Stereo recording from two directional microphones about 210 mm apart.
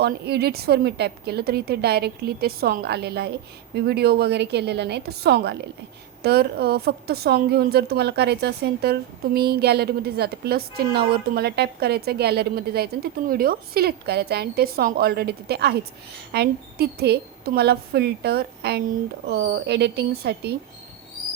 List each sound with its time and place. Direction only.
0.0 s a woman's voice: 50° right (ahead or behind)